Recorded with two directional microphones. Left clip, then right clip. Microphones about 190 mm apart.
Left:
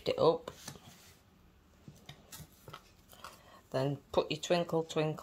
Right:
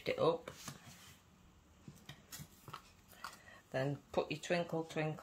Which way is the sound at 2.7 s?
5° right (ahead or behind).